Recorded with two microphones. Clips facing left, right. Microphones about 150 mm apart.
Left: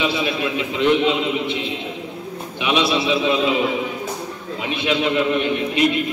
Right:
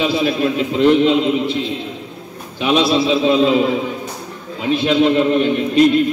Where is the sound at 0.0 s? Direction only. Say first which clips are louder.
Right 5 dB; 40° right (ahead or behind).